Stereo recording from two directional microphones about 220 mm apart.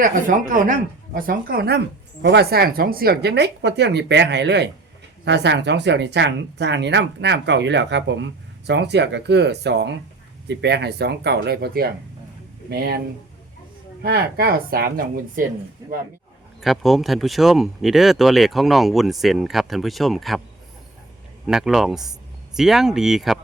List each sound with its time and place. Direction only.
0.0 s speech: 40° right (ahead or behind)
14.0 s speech: 45° right (ahead or behind)
15.8 s a man's voice: 15° right (ahead or behind)
16.6 s speech: centre (ahead or behind)
21.4 s speech: 5° right (ahead or behind)